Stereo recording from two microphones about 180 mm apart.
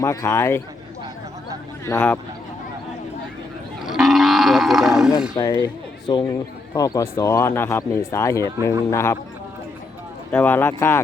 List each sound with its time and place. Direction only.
0.0 s speech: 20° left (ahead or behind)
1.8 s speech: 10° left (ahead or behind)
3.8 s livestock: centre (ahead or behind)
5.4 s speech: 20° left (ahead or behind)
10.3 s speech: 10° left (ahead or behind)